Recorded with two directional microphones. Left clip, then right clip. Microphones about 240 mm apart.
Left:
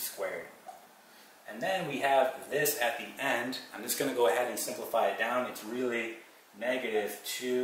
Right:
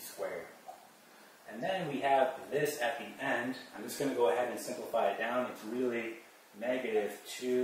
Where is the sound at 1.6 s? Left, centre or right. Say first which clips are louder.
Left 3 dB; centre.